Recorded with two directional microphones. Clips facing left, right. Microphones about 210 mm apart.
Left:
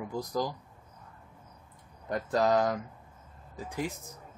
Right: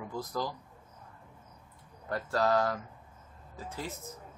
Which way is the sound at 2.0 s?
15° left (ahead or behind).